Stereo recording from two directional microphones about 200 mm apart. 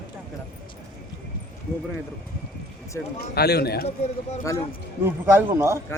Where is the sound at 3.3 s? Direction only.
55° left (ahead or behind).